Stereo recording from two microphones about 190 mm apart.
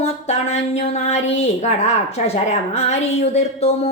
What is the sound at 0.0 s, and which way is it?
A woman's voice, 35° left (ahead or behind).